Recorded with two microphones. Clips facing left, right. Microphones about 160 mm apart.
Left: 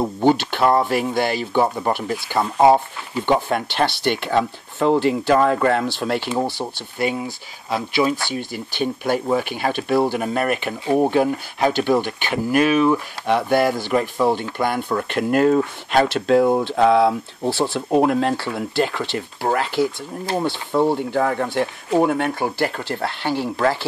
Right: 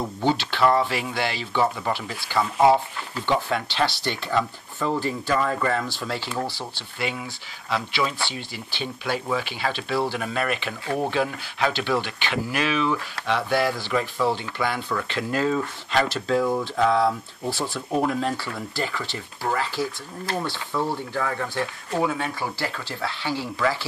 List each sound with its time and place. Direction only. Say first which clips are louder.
0.0 s speech: left 7 dB; 50° left (ahead or behind)
6.6 s speech: left 7 dB; 45° left (ahead or behind)